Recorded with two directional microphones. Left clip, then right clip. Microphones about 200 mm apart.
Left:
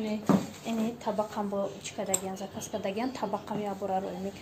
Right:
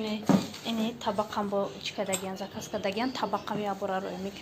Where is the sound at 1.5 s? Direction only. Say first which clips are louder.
Right 2 dB; 20° right (ahead or behind).